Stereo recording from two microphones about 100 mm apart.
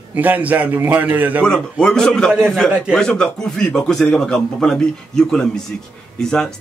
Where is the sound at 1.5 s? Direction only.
5° left (ahead or behind).